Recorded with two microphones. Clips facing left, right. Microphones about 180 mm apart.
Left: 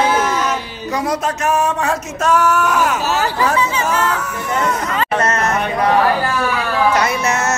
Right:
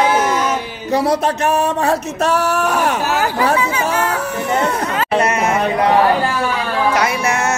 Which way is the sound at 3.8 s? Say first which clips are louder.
Even; 35° right (ahead or behind).